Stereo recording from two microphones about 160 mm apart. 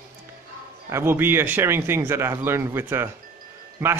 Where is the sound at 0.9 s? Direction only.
15° right (ahead or behind).